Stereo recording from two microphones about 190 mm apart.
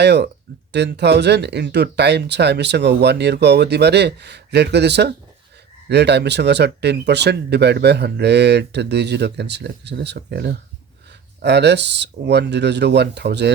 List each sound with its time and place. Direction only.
0.0 s speech: 60° right (ahead or behind)